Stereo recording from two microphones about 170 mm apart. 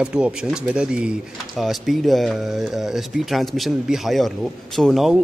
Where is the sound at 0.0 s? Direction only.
5° right (ahead or behind).